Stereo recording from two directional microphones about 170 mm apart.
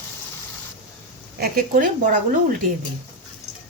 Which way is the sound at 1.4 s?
60° right (ahead or behind).